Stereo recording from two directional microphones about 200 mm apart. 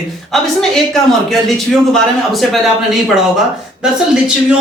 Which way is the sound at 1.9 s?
Centre (ahead or behind).